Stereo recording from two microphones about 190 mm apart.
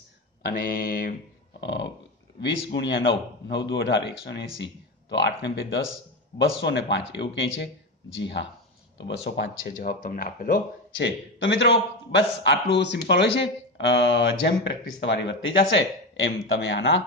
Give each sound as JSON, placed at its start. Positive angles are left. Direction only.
{"t": 0.5, "sound": "mantra", "side_deg": 50}
{"t": 1.6, "sound": "a sound", "side_deg": 70}
{"t": 2.4, "sound": "a man's voice", "side_deg": 70}
{"t": 10.0, "sound": "mantra", "side_deg": 45}
{"t": 11.0, "sound": "a man's voice", "side_deg": 70}